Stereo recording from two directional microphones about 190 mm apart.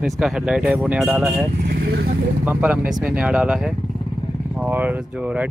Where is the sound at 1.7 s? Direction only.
55° right (ahead or behind).